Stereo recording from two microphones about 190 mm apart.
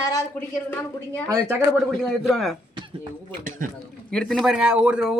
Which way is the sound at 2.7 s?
25° right (ahead or behind).